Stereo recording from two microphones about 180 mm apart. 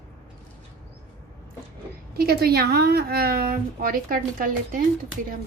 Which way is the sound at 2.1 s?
60° right (ahead or behind).